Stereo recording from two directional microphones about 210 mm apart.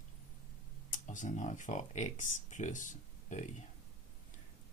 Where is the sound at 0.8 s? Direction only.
35° left (ahead or behind).